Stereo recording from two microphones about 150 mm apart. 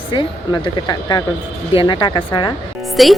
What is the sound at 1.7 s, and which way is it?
Speech, 35° left (ahead or behind).